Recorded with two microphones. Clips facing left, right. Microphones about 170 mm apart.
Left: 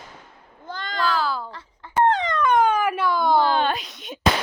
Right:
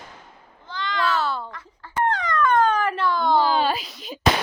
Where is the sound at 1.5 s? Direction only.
25° left (ahead or behind).